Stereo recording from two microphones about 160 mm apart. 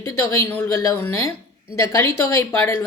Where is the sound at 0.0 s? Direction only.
20° left (ahead or behind).